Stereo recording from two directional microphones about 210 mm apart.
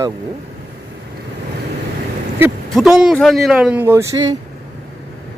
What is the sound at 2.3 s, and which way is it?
Speech, 5° right (ahead or behind).